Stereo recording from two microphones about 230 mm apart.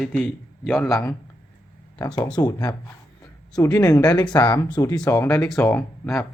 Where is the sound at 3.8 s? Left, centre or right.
Centre.